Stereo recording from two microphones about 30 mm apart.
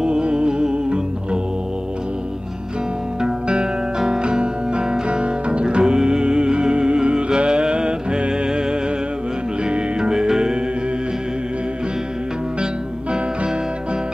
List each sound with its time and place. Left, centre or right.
0.0 s music: right
3.2 s music: right
9.7 s music: right